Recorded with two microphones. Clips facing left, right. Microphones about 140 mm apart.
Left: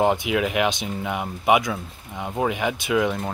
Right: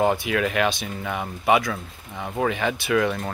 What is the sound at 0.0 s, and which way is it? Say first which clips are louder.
Speech: left 1 dB; 20° left (ahead or behind).